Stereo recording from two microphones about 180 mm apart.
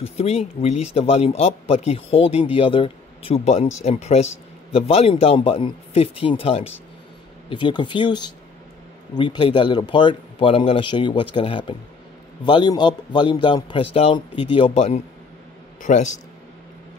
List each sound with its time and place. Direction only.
0.0 s a man's voice: 35° left (ahead or behind)